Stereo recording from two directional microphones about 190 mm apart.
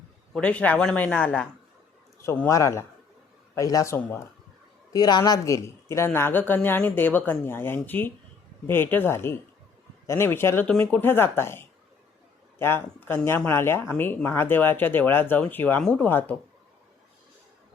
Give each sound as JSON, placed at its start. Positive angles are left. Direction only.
{"t": 0.3, "sound": "speech", "side_deg": 5}